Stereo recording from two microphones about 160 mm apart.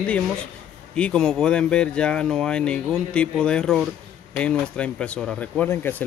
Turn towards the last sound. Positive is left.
turn(degrees=15)  # may be behind; listen again after turning